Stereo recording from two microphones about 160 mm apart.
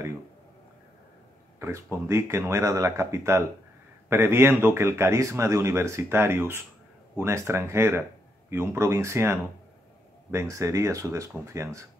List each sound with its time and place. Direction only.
1.6 s a man's voice: 15° right (ahead or behind)